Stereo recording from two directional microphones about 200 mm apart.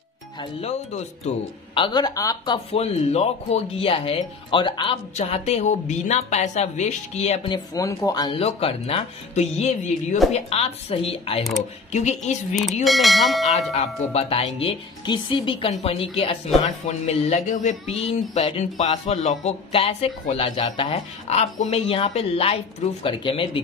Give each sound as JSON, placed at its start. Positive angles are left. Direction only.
{"t": 0.4, "sound": "speech", "side_deg": 30}
{"t": 1.8, "sound": "speech", "side_deg": 20}
{"t": 12.8, "sound": "speech", "side_deg": 0}
{"t": 13.5, "sound": "speech", "side_deg": 30}